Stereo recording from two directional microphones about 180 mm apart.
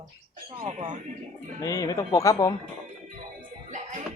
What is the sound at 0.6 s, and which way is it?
Speech, 40° right (ahead or behind).